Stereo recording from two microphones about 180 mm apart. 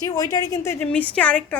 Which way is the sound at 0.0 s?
20° left (ahead or behind).